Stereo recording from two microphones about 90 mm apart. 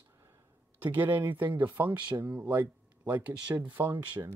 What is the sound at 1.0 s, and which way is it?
Speech, 20° right (ahead or behind).